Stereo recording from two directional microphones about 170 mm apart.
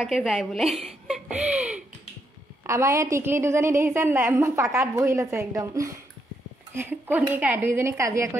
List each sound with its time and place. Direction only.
0.0 s a woman's voice: centre (ahead or behind); by 8.4 s 15° right (ahead or behind)